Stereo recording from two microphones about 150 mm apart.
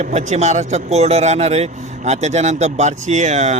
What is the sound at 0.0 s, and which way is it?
Speech, 50° right (ahead or behind).